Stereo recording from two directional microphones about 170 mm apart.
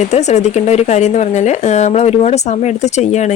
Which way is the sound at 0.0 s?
40° left (ahead or behind).